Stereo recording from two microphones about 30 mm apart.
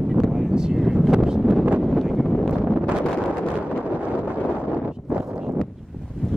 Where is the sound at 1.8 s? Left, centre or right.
Centre.